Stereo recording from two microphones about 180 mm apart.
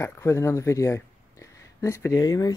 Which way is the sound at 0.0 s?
15° left (ahead or behind).